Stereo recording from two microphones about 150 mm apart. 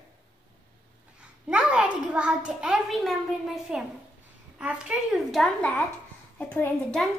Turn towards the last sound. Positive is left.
turn(degrees=5)  # may be behind; listen again after turning